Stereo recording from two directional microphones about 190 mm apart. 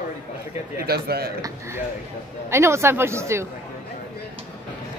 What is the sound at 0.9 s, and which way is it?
Speech, 55° right (ahead or behind).